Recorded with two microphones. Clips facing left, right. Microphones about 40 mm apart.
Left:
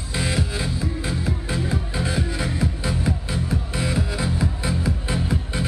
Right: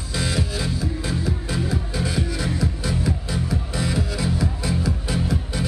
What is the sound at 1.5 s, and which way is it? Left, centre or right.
Music, left.